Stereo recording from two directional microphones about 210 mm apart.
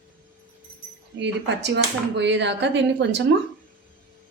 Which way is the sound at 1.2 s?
55° right (ahead or behind).